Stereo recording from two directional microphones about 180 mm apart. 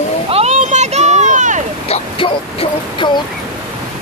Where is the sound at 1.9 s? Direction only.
30° left (ahead or behind).